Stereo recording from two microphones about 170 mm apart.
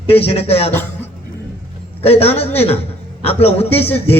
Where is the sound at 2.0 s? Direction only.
35° left (ahead or behind).